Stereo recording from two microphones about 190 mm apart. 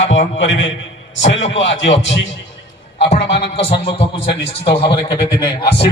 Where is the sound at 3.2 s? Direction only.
65° left (ahead or behind).